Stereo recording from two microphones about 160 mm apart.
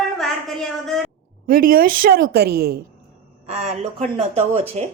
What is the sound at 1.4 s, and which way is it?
A woman's voice, 65° right (ahead or behind).